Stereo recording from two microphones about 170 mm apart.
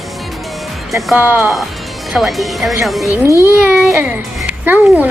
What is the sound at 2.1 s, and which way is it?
Speech, centre (ahead or behind).